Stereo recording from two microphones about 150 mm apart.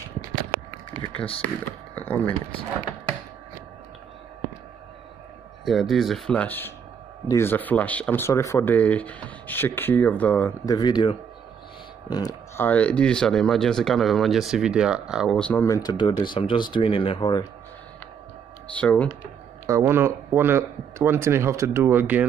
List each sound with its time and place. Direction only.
1.0 s speech: 35° left (ahead or behind)
2.0 s speech: 10° left (ahead or behind)
5.7 s speech: centre (ahead or behind)
10.6 s speech: 25° left (ahead or behind)
12.6 s speech: 10° left (ahead or behind)
15.3 s speech: 10° left (ahead or behind)
15.6 s speech: 25° left (ahead or behind)
18.8 s speech: 10° left (ahead or behind)
19.6 s speech: 15° right (ahead or behind)